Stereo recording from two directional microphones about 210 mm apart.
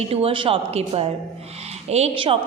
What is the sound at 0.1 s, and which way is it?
A woman's voice, 25° right (ahead or behind).